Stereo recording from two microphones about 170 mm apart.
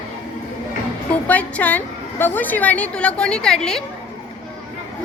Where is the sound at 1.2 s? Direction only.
10° left (ahead or behind).